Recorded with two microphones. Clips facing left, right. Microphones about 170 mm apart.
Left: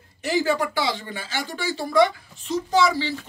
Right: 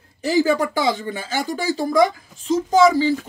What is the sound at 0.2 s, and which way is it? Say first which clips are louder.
A woman's voice: right 4 dB; 40° right (ahead or behind).